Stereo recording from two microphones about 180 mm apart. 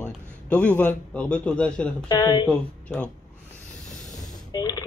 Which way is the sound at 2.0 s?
20° left (ahead or behind).